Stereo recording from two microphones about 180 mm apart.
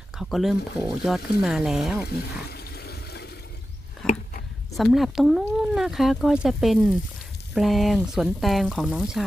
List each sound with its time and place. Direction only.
0.2 s speech: centre (ahead or behind)
2.4 s water: 60° left (ahead or behind)
4.0 s biting: 5° left (ahead or behind)
4.7 s speech: centre (ahead or behind)